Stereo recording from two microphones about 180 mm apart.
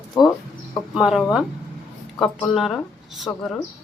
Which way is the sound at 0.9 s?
5° right (ahead or behind).